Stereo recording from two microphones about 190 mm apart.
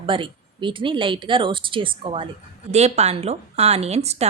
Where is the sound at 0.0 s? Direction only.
25° right (ahead or behind).